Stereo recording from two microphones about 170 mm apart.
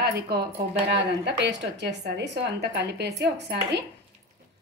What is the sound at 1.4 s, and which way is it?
A woman's voice, 90° right.